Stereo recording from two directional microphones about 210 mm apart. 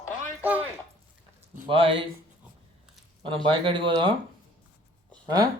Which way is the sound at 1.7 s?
25° right (ahead or behind).